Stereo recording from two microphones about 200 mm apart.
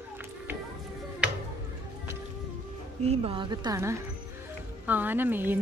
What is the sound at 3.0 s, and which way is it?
A woman's voice, 30° right (ahead or behind).